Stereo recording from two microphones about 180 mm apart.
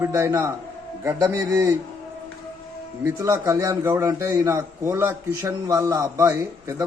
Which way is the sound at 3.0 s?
15° right (ahead or behind).